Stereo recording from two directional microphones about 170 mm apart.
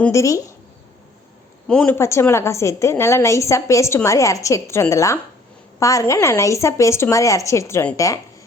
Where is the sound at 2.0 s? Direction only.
15° left (ahead or behind).